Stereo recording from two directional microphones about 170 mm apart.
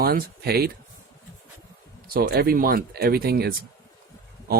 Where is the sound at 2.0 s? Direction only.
60° right (ahead or behind).